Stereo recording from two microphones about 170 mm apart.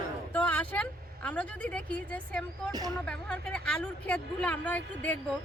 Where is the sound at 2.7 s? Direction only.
25° right (ahead or behind).